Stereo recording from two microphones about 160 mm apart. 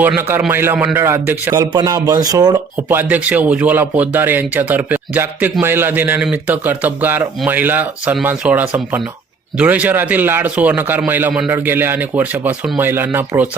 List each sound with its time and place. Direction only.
0.0 s a man's voice: 15° right (ahead or behind)
2.7 s a man's voice: 10° right (ahead or behind)